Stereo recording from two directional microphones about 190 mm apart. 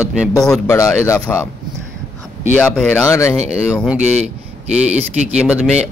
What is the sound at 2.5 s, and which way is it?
Speech, 10° left (ahead or behind).